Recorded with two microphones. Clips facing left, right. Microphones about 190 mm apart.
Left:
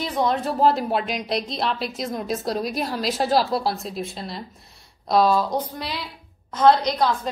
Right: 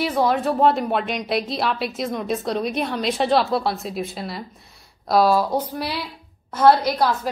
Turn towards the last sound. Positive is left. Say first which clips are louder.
# right 1 dB
turn(degrees=-5)  # may be behind; listen again after turning